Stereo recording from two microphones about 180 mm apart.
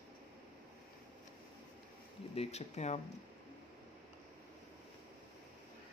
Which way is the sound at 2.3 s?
35° left (ahead or behind).